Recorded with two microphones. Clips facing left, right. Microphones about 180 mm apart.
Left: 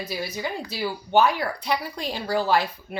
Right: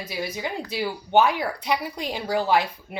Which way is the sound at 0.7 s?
20° right (ahead or behind).